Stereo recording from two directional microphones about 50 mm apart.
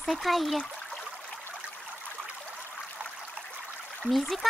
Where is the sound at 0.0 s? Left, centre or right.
Centre.